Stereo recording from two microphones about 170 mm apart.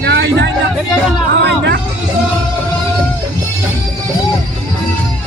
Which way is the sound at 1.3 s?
85° right.